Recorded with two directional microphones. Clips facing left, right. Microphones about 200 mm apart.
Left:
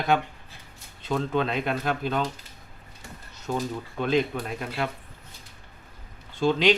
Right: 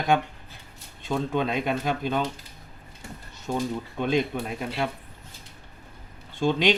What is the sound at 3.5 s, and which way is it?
Speech, 15° right (ahead or behind).